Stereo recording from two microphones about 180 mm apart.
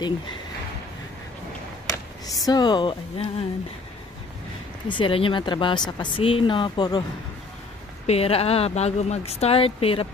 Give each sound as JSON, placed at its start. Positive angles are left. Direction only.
{"t": 1.9, "sound": "speech", "side_deg": 20}
{"t": 4.8, "sound": "a woman's voice", "side_deg": 30}
{"t": 8.1, "sound": "speech", "side_deg": 35}